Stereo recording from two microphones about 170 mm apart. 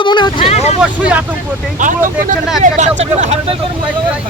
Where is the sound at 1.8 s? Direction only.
50° right (ahead or behind).